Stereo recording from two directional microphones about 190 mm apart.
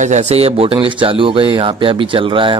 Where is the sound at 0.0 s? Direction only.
35° right (ahead or behind).